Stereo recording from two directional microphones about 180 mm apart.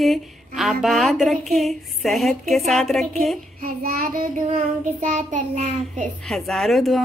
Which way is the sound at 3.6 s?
55° right (ahead or behind).